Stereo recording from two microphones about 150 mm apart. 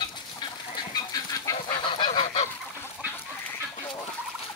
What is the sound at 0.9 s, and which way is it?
Goose, 25° left (ahead or behind).